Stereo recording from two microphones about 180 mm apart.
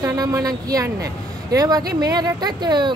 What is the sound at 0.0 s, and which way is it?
Speech, 20° right (ahead or behind).